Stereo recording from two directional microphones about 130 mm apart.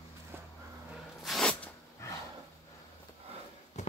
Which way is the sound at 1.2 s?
5° left (ahead or behind).